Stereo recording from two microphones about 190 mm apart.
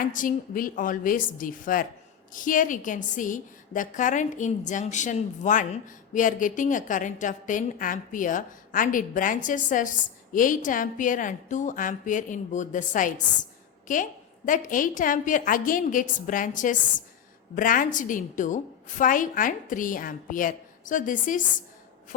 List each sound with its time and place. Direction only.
0.1 s a woman's voice: 45° left (ahead or behind)